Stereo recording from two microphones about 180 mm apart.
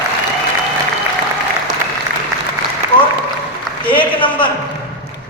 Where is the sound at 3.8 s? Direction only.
30° left (ahead or behind).